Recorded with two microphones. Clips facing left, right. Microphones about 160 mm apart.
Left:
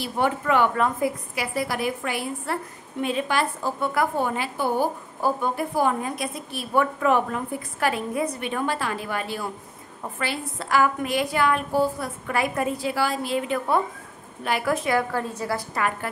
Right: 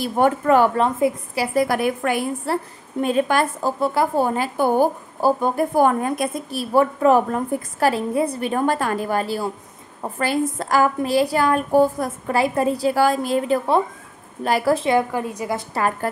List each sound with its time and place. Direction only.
0.0 s a woman's voice: 45° right (ahead or behind)
0.8 s a woman's voice: 25° right (ahead or behind)
1.4 s a woman's voice: 45° right (ahead or behind)
2.4 s a woman's voice: 40° right (ahead or behind)
3.8 s a woman's voice: 30° right (ahead or behind); by 12.1 s 45° right (ahead or behind)
12.3 s a woman's voice: 30° right (ahead or behind); by 15.6 s 15° right (ahead or behind)
15.7 s a woman's voice: 35° right (ahead or behind)